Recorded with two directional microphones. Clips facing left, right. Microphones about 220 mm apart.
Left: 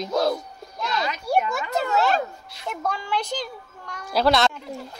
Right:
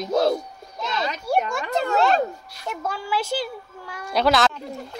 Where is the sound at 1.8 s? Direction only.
5° left (ahead or behind).